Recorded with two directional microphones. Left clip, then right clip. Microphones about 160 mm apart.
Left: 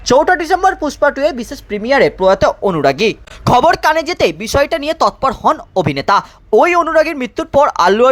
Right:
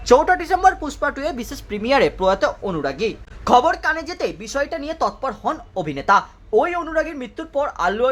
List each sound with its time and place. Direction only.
0.0 s speech: 30° left (ahead or behind)
2.4 s a woman's voice: 40° left (ahead or behind)
3.4 s a woman's voice: 55° left (ahead or behind)